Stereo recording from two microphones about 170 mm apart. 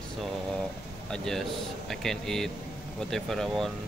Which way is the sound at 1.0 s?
5° left (ahead or behind).